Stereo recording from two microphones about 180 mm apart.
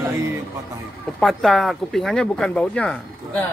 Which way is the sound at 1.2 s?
Centre (ahead or behind).